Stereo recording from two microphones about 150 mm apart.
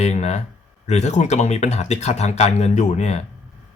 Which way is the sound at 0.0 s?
45° left (ahead or behind).